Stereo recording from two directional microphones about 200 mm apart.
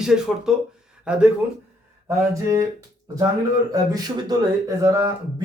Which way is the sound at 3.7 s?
20° right (ahead or behind).